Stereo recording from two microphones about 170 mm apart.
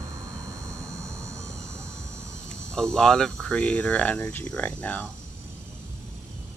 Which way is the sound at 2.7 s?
5° left (ahead or behind).